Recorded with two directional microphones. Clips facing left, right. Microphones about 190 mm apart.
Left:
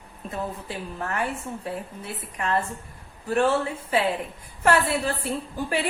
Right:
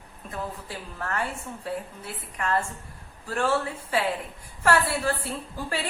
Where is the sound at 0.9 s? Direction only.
15° left (ahead or behind).